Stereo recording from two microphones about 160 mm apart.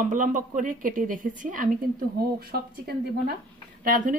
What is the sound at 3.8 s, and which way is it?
Speech, 60° right (ahead or behind).